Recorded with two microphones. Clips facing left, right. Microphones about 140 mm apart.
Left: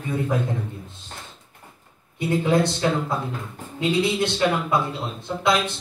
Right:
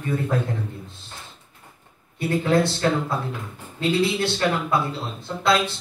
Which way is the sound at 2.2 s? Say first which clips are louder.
Even; 20° left (ahead or behind).